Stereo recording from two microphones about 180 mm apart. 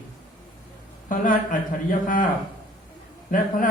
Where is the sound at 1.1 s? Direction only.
50° left (ahead or behind).